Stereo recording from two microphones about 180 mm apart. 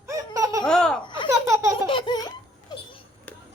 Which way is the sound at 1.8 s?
25° left (ahead or behind).